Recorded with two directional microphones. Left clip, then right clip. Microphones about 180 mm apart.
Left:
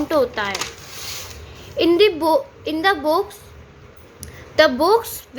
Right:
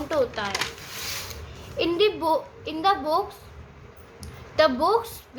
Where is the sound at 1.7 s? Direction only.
35° left (ahead or behind).